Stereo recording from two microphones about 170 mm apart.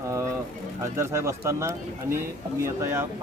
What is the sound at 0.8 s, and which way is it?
Speech, 15° right (ahead or behind).